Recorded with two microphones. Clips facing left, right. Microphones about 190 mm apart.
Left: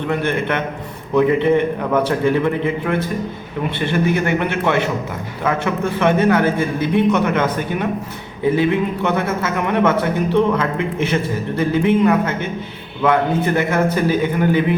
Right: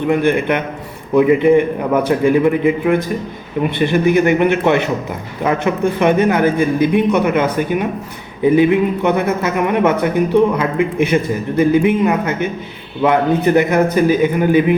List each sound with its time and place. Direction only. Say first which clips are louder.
0.1 s a man's voice: right 5 dB; 15° right (ahead or behind)